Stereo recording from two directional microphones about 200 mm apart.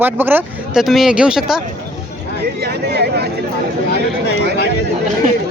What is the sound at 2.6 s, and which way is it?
Speech, 55° right (ahead or behind).